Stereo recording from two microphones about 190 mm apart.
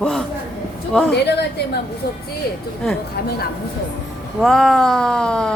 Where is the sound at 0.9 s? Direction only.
5° left (ahead or behind).